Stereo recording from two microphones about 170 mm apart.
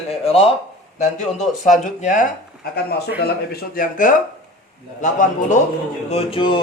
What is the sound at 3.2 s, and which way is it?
Speech, 65° left (ahead or behind).